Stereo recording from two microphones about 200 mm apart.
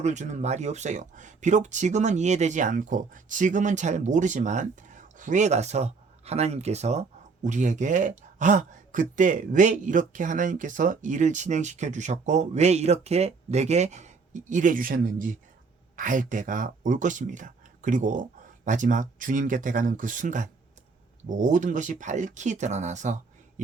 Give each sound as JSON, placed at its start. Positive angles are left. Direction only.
{"t": 0.0, "sound": "speech", "side_deg": -35}